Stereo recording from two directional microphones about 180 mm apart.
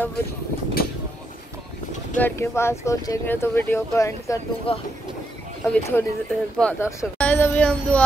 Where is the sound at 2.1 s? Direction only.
10° left (ahead or behind).